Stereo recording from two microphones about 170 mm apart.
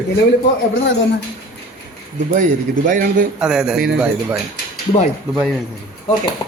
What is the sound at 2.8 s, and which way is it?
Speech, 55° right (ahead or behind).